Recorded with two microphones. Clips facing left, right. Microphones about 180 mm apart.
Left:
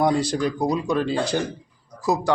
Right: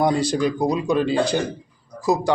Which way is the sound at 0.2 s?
Centre (ahead or behind).